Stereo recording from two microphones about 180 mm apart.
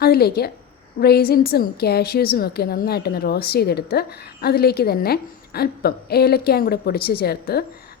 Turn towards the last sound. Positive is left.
turn(degrees=60)  # may be behind; listen again after turning